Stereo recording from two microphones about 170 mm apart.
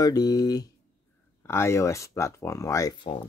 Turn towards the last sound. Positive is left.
turn(degrees=20)  # may be behind; listen again after turning